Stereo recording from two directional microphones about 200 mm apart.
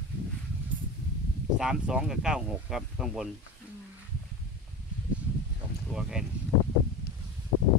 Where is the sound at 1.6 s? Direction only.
5° right (ahead or behind).